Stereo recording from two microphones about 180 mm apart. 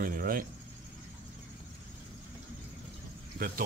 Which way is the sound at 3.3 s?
55° right (ahead or behind).